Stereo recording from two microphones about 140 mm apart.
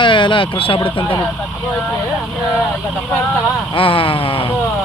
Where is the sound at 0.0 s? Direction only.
35° left (ahead or behind).